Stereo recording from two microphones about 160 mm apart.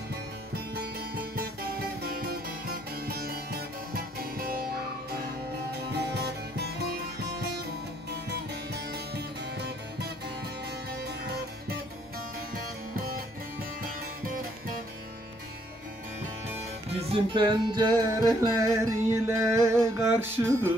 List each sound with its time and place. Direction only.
1.3 s music: 70° right (ahead or behind)
5.2 s music: 90° right
8.7 s music: 90° right
10.9 s music: 80° right
17.1 s music: 30° right (ahead or behind); by 20.7 s 15° right (ahead or behind)